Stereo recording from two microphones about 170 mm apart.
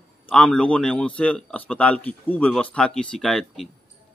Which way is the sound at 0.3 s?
5° left (ahead or behind).